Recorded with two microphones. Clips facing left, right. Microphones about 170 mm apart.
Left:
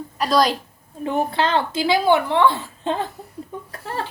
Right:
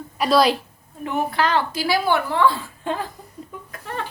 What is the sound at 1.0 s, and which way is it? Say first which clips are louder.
A woman's voice: left 1 dB; 30° left (ahead or behind).